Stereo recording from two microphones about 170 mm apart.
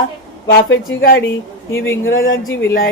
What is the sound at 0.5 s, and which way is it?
Speech, 85° left.